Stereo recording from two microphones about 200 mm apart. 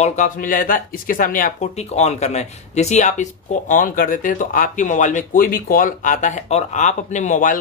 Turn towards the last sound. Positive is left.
turn(degrees=40)  # may be behind; listen again after turning